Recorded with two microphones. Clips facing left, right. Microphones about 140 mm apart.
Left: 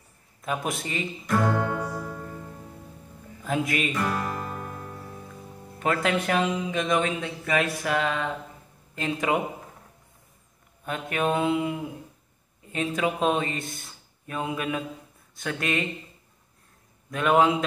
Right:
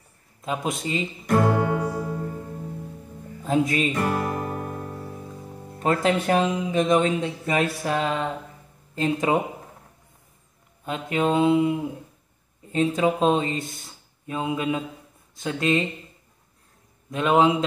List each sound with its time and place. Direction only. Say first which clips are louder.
0.4 s speech: right 2 dB; 20° right (ahead or behind)
1.2 s speech: right 4 dB; 60° right (ahead or behind)
3.4 s speech: right 5 dB; 30° right (ahead or behind)
4.3 s music: right 5 dB; 50° right (ahead or behind)
4.6 s music: right 5 dB; 35° right (ahead or behind)
5.8 s speech: right 3 dB; 30° right (ahead or behind)
10.9 s speech: right 3 dB; 25° right (ahead or behind)
12.7 s speech: right 5 dB; 25° right (ahead or behind)
17.1 s speech: right 2 dB; 20° right (ahead or behind)